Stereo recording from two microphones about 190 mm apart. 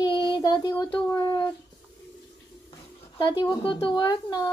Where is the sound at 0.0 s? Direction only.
25° left (ahead or behind).